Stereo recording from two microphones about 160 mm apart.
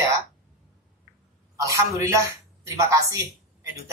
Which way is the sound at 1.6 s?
20° right (ahead or behind).